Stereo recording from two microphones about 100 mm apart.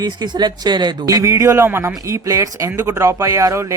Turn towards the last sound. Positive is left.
turn(degrees=-35)  # may be behind; listen again after turning